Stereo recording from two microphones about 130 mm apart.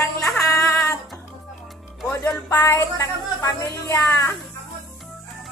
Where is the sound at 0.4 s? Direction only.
25° left (ahead or behind).